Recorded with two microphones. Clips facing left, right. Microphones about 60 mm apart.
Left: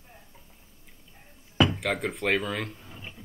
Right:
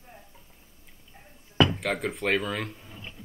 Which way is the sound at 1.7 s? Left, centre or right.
Centre.